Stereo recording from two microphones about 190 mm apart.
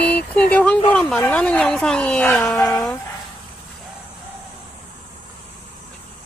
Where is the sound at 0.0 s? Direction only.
5° left (ahead or behind).